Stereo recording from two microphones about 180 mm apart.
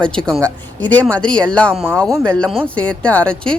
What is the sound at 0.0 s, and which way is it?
Speech, 5° left (ahead or behind).